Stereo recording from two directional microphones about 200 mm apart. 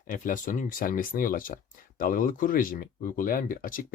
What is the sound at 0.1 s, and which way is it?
Speech, 40° left (ahead or behind).